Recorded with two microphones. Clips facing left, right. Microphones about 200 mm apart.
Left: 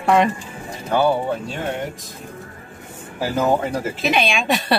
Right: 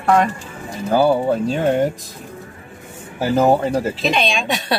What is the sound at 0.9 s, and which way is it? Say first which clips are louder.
Speech: right 3 dB; 35° right (ahead or behind).